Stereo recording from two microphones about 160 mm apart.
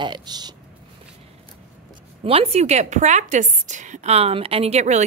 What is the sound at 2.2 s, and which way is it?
A woman's voice, 35° right (ahead or behind).